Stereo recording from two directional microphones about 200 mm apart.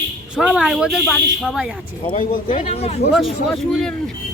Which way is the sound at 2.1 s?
40° left (ahead or behind).